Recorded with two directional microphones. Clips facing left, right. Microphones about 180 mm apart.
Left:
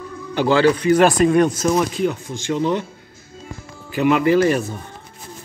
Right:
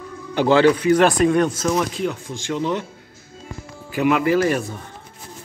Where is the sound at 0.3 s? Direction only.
20° right (ahead or behind).